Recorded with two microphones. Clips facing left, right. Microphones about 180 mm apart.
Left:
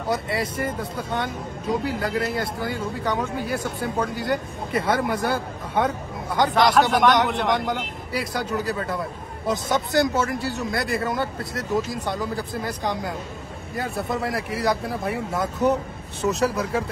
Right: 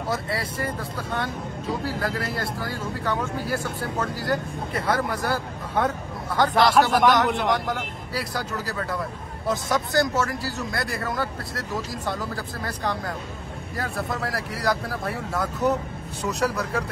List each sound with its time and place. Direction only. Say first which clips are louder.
0.1 s speech: left 4 dB; 25° left (ahead or behind)
6.5 s speech: even; 5° right (ahead or behind)
7.5 s speech: left 2 dB; 20° left (ahead or behind)